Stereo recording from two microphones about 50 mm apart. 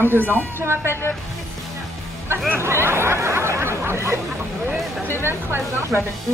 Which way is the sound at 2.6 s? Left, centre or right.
Right.